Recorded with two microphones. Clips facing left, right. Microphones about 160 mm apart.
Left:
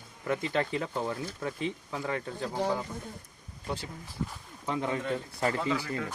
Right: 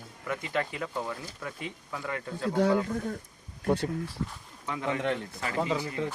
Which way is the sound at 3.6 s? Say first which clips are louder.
Right 9 dB; 55° right (ahead or behind).